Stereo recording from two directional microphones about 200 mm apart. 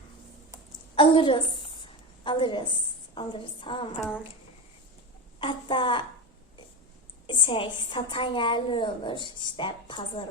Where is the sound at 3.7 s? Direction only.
25° left (ahead or behind).